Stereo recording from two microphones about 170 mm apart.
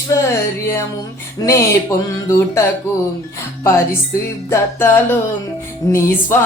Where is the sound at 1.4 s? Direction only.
20° left (ahead or behind).